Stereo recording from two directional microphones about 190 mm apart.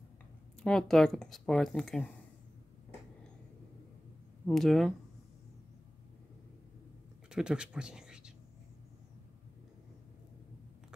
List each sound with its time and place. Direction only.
0.6 s speech: 5° left (ahead or behind)
4.5 s speech: centre (ahead or behind)
7.2 s a man's voice: 5° right (ahead or behind)